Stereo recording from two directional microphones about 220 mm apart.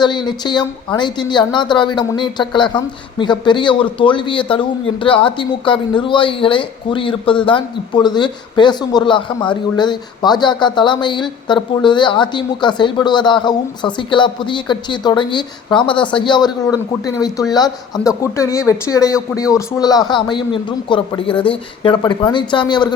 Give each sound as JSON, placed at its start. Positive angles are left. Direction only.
{"t": 0.0, "sound": "a woman's voice", "side_deg": 20}